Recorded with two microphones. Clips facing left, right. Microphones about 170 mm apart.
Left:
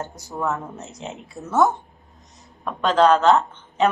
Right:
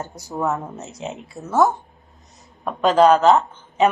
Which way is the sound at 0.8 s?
Centre (ahead or behind).